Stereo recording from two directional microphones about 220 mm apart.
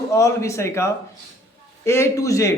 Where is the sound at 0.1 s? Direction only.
15° left (ahead or behind).